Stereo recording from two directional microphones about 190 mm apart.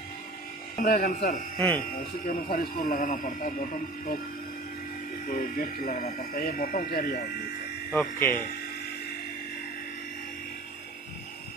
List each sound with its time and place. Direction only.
0.7 s speech: 50° left (ahead or behind)
5.2 s speech: 45° left (ahead or behind)
7.9 s speech: 10° left (ahead or behind)